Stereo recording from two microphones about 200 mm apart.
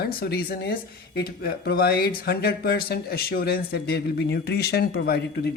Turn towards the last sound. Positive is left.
turn(degrees=55)  # may be behind; listen again after turning